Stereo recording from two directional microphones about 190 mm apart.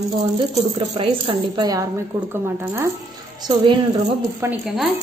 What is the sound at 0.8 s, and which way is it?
Speech, 25° right (ahead or behind).